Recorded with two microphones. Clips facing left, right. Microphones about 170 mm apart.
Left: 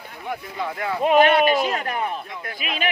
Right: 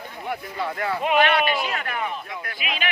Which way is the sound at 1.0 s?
40° left (ahead or behind).